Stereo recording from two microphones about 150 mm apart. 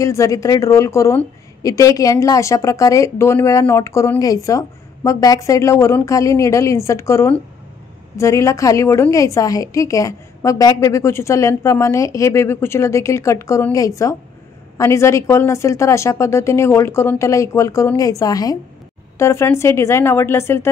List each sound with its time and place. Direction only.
0.0 s a woman's voice: 20° left (ahead or behind)